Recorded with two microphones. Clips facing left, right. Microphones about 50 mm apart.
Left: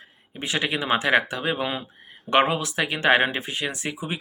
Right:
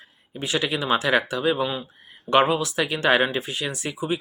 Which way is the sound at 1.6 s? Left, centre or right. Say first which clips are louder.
Right 2 dB; left.